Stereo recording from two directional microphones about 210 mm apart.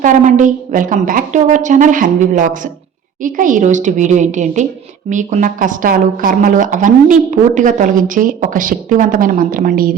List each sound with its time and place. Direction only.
0.0 s speech: 35° right (ahead or behind)